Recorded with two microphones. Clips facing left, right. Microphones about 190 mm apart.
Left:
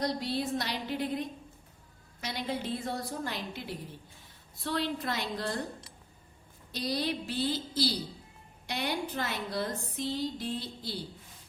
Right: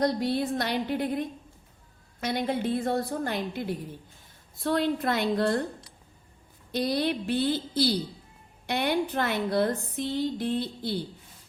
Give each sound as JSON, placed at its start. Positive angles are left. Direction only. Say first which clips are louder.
{"t": 0.0, "sound": "a woman's voice", "louder": "right 6 dB", "side_deg": -55}
{"t": 6.7, "sound": "a woman's voice", "louder": "right 6 dB", "side_deg": -60}